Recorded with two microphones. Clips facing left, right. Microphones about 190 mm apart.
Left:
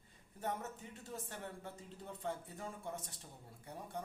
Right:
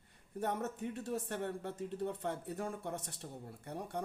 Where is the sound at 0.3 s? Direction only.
65° right (ahead or behind).